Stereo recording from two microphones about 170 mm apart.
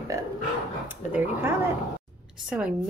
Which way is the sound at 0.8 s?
10° right (ahead or behind).